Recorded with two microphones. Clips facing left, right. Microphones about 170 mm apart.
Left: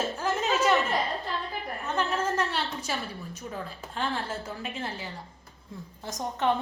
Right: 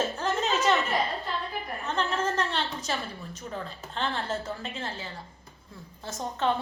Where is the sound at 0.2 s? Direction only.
10° left (ahead or behind).